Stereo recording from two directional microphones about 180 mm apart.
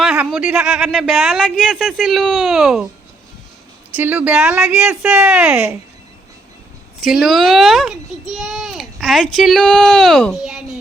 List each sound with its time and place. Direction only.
0.0 s a child's voice: 5° right (ahead or behind)
3.9 s a child's voice: 10° right (ahead or behind)
7.0 s a child's voice: centre (ahead or behind)